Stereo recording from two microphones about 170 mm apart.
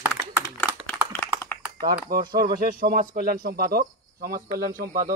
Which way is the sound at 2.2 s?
25° right (ahead or behind).